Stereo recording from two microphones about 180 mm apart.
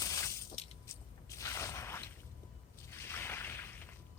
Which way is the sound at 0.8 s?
15° left (ahead or behind).